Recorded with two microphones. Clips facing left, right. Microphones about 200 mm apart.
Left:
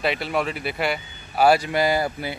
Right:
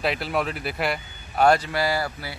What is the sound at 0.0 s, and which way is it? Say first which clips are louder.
Speech: left 1 dB; centre (ahead or behind).